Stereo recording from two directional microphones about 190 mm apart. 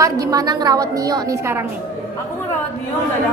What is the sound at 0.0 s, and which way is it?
A woman's voice, 20° right (ahead or behind).